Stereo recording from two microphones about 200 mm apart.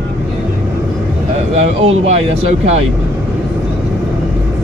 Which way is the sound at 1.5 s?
30° right (ahead or behind).